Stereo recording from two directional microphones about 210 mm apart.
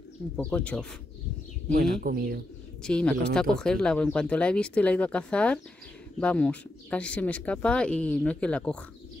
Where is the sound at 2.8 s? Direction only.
5° left (ahead or behind).